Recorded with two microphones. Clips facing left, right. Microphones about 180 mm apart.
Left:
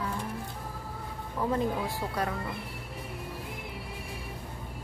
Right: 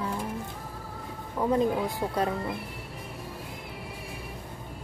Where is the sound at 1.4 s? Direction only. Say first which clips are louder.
Right 4 dB; 20° right (ahead or behind).